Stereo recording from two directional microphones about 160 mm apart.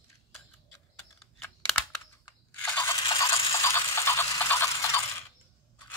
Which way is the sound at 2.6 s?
10° left (ahead or behind).